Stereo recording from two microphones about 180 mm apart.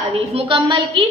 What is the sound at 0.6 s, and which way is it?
Speech, 25° right (ahead or behind).